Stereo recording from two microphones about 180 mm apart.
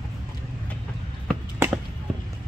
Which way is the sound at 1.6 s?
15° right (ahead or behind).